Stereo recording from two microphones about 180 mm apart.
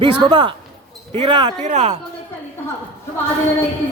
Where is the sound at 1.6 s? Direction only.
40° right (ahead or behind).